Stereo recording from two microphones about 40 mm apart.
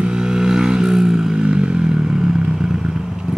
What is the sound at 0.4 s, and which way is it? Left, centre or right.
Vehicle, centre.